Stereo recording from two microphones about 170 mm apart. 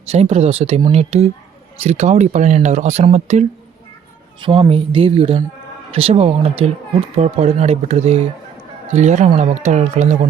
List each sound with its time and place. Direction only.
0.1 s speech: 40° right (ahead or behind)
4.4 s speech: 30° right (ahead or behind)